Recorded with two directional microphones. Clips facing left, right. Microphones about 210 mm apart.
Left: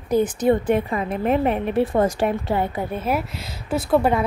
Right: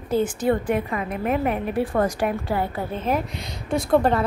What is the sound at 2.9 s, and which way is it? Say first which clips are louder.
Speech: right 1 dB; 10° left (ahead or behind).